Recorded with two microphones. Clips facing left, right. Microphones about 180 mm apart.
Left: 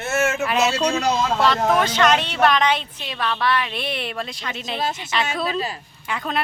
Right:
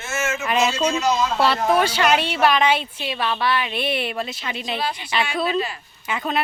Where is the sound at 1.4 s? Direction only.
10° right (ahead or behind).